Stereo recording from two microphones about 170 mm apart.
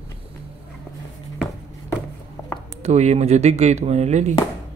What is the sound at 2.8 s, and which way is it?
Speech, 40° right (ahead or behind).